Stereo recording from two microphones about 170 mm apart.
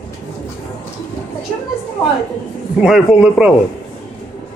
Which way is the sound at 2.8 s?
5° right (ahead or behind).